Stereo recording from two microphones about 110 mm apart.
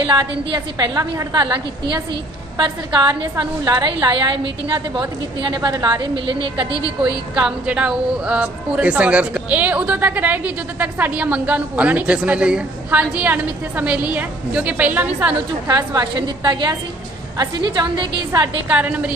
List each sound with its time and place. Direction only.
0.0 s a woman's voice: 40° right (ahead or behind)
7.0 s a woman's voice: 10° right (ahead or behind)
15.6 s a woman's voice: 35° right (ahead or behind)
18.7 s a woman's voice: 10° right (ahead or behind)